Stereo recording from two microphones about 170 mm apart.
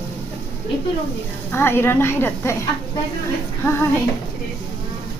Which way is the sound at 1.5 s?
15° left (ahead or behind).